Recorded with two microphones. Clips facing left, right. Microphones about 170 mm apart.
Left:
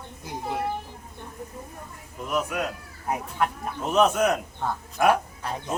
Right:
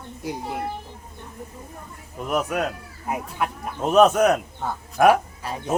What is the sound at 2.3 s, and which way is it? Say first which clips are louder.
Speech: right 3 dB; 55° right (ahead or behind).